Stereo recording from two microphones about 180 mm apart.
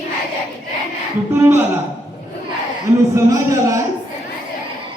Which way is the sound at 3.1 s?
15° right (ahead or behind).